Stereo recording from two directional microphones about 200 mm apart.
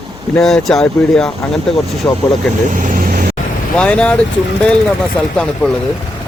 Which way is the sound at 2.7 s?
45° right (ahead or behind).